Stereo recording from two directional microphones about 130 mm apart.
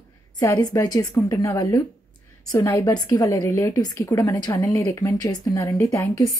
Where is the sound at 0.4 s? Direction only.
25° left (ahead or behind).